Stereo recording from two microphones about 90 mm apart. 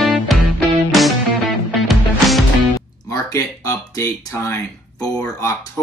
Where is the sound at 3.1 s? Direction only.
40° left (ahead or behind).